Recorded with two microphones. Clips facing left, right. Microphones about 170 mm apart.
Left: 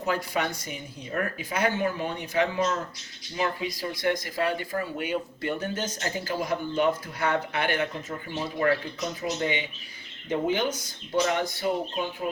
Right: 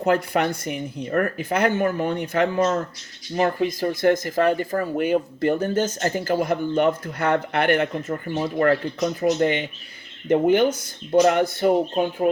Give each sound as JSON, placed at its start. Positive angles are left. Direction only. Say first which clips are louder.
{"t": 0.0, "sound": "speech", "louder": "right 7 dB", "side_deg": -60}